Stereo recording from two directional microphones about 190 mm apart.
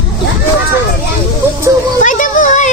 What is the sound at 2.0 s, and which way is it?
Speech, 40° left (ahead or behind).